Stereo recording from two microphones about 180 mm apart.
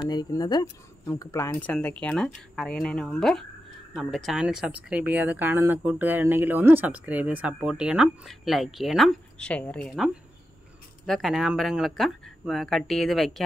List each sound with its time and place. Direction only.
0.0 s speech: 20° left (ahead or behind); by 13.3 s centre (ahead or behind)